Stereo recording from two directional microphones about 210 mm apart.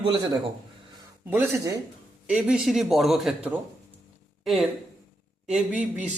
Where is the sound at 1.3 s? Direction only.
10° right (ahead or behind).